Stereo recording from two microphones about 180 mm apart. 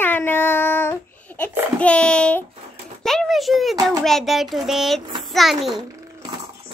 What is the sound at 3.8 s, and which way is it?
Child singing, 20° right (ahead or behind).